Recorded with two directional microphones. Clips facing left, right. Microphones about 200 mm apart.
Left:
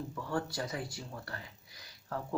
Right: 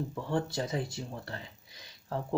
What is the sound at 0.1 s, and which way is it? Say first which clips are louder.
Speech: right 4 dB; 25° right (ahead or behind).